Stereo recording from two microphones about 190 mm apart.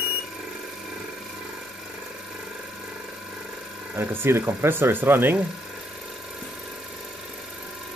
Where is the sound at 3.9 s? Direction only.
10° right (ahead or behind).